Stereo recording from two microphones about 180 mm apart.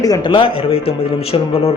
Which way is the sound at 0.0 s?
25° left (ahead or behind).